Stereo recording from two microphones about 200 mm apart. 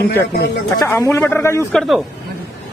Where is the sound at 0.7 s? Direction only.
15° left (ahead or behind).